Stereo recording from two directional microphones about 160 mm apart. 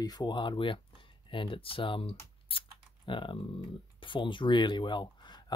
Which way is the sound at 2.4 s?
35° left (ahead or behind).